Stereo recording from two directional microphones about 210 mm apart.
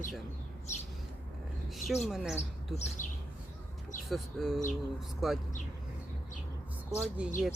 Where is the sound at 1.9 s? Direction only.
Centre (ahead or behind).